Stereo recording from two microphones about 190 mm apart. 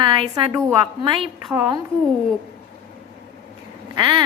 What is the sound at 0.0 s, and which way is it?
A woman's voice, 20° right (ahead or behind).